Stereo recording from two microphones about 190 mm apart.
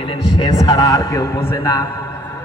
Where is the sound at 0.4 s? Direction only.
20° left (ahead or behind).